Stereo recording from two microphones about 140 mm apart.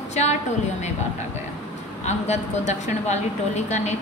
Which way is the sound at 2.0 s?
55° left (ahead or behind).